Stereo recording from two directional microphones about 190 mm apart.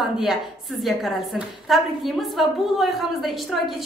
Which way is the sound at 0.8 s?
Centre (ahead or behind).